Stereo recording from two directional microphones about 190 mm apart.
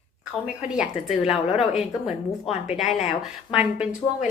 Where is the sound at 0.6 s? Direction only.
5° right (ahead or behind).